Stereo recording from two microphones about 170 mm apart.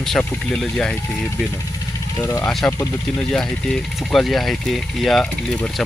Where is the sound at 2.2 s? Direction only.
15° left (ahead or behind).